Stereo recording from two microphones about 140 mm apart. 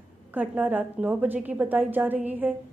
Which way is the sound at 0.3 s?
10° right (ahead or behind).